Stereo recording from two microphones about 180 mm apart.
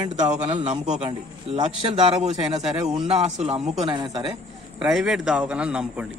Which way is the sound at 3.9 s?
25° right (ahead or behind).